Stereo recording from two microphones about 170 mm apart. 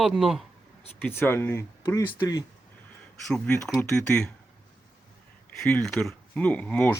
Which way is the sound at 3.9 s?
5° left (ahead or behind).